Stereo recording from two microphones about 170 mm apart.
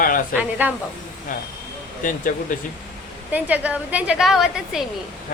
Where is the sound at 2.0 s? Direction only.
50° left (ahead or behind).